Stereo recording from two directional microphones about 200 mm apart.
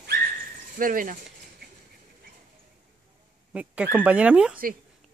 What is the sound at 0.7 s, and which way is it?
Speech, 45° right (ahead or behind).